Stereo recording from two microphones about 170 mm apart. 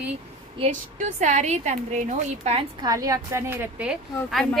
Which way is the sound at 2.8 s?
20° right (ahead or behind).